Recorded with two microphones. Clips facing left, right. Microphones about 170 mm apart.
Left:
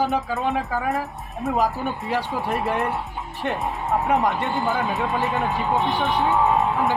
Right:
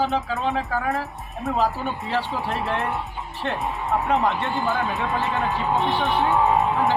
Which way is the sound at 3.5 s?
Centre (ahead or behind).